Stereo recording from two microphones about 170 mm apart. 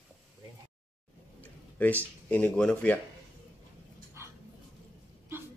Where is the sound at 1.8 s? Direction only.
10° left (ahead or behind).